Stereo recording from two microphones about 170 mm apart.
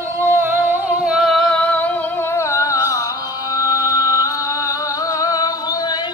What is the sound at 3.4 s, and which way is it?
Music, 20° left (ahead or behind).